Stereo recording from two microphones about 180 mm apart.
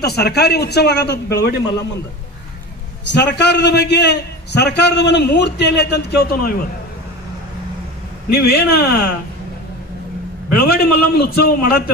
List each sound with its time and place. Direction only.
0.0 s speech: 65° left (ahead or behind)
3.1 s a man's voice: 70° left (ahead or behind)
8.3 s speech: 60° left (ahead or behind)
10.6 s speech: 55° left (ahead or behind)